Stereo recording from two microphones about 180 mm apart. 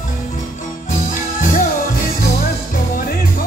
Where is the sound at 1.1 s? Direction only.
45° left (ahead or behind).